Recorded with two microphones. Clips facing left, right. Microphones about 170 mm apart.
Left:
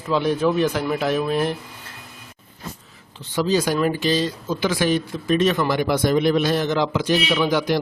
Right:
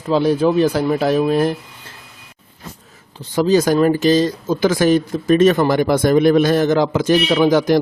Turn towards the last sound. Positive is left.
turn(degrees=-45)  # may be behind; listen again after turning